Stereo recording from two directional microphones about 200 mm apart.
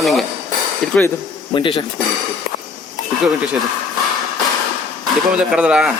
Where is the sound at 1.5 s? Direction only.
25° left (ahead or behind).